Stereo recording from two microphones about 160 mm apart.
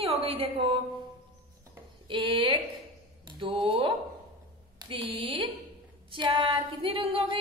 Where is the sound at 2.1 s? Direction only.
30° right (ahead or behind).